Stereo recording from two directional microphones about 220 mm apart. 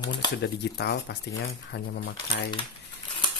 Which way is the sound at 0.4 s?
50° left (ahead or behind).